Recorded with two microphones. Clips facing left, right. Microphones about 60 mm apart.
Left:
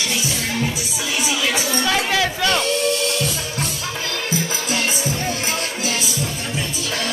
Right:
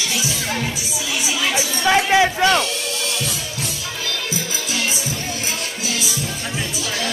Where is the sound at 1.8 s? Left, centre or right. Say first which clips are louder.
Right 7 dB; right.